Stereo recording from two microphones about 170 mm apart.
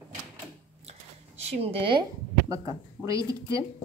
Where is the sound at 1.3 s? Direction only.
35° right (ahead or behind).